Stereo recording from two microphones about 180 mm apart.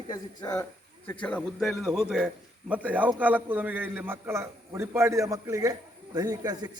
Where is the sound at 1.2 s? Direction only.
5° left (ahead or behind).